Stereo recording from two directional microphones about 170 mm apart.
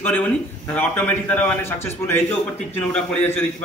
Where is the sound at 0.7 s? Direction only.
10° left (ahead or behind).